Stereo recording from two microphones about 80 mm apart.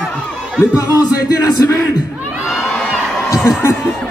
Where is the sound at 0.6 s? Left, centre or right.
Left.